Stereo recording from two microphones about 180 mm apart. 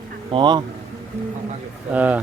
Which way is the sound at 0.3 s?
25° right (ahead or behind).